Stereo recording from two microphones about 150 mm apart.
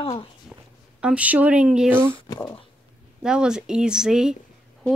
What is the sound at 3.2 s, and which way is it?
Speech, 5° right (ahead or behind).